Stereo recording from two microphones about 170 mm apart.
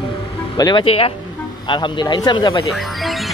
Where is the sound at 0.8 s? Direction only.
35° left (ahead or behind).